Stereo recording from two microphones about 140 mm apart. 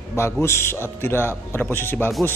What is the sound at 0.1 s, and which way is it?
A man's voice, 20° left (ahead or behind).